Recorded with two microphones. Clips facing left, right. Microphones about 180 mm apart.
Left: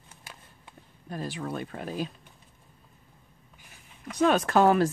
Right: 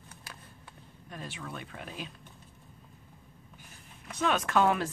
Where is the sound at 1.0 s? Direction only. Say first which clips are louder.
Left 8 dB; 40° left (ahead or behind).